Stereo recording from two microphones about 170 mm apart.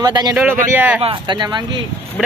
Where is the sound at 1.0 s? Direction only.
30° right (ahead or behind).